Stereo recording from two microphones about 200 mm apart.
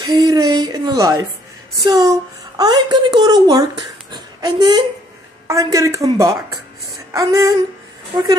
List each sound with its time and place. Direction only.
0.0 s speech: 20° right (ahead or behind)